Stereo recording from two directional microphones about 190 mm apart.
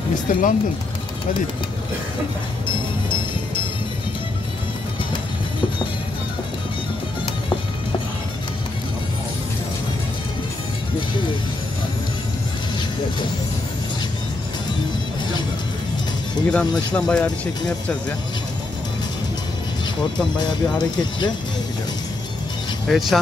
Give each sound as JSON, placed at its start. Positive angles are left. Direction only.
{"t": 0.3, "sound": "speech", "side_deg": 45}
{"t": 16.4, "sound": "speech", "side_deg": 5}
{"t": 20.3, "sound": "speech", "side_deg": 20}
{"t": 22.8, "sound": "speech", "side_deg": 0}